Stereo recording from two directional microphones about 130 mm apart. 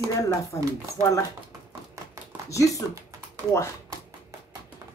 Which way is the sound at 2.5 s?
25° left (ahead or behind).